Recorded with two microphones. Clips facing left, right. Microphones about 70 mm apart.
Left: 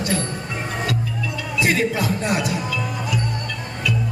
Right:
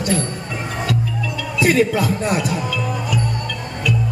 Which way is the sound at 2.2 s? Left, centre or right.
Right.